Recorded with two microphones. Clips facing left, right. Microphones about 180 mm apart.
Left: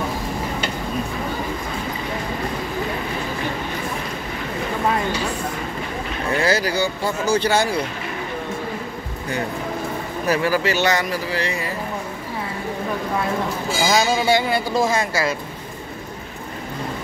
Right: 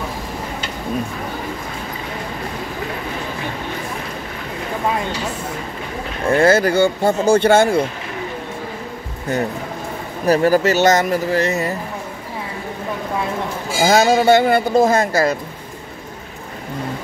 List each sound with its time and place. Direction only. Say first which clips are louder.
6.3 s speech: right 7 dB; 50° right (ahead or behind)
10.2 s speech: right 6 dB; 40° right (ahead or behind)
13.8 s speech: right 6 dB; 50° right (ahead or behind)